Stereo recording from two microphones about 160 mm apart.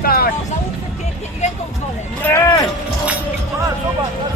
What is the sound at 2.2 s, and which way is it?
Speech, 20° left (ahead or behind).